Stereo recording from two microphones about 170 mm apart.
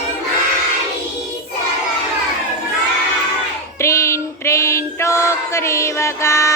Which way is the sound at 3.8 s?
15° left (ahead or behind).